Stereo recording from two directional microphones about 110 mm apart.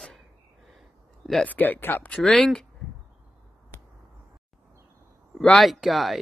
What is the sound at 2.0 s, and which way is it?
Speech, 10° left (ahead or behind).